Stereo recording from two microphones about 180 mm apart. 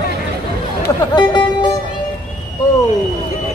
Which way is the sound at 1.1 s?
25° left (ahead or behind).